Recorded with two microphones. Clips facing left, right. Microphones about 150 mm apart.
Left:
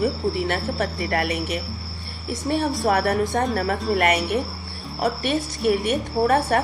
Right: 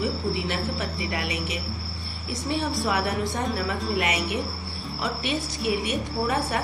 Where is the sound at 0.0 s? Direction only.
50° left (ahead or behind).